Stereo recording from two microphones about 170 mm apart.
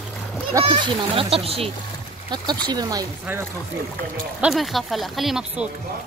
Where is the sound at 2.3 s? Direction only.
25° right (ahead or behind).